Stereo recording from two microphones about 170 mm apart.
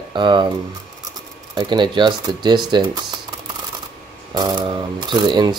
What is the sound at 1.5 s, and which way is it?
Speech, 25° right (ahead or behind).